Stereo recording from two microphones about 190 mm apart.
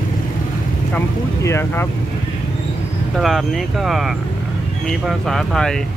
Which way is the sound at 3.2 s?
Centre (ahead or behind).